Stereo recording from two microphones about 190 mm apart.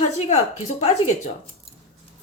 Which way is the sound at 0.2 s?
35° left (ahead or behind).